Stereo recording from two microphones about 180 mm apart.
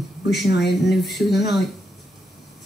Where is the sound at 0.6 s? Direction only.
Centre (ahead or behind).